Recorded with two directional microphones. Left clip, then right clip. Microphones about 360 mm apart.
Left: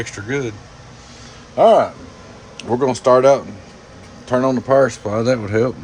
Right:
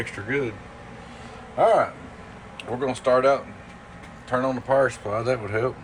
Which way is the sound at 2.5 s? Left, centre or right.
Left.